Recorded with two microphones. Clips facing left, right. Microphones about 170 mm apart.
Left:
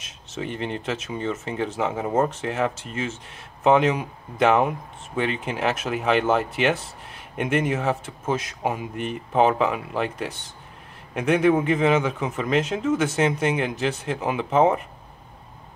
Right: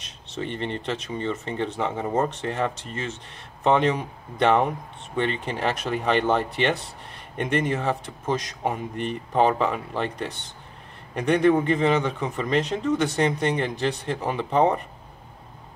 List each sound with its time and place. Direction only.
0.3 s speech: 5° left (ahead or behind)